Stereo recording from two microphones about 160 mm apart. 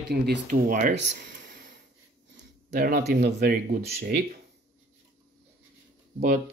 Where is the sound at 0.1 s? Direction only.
80° right.